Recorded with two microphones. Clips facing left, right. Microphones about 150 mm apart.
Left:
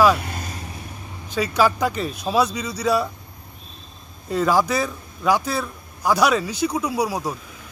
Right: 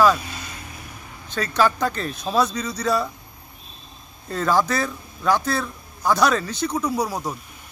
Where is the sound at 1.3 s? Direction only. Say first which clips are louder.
Left 1 dB; 10° left (ahead or behind).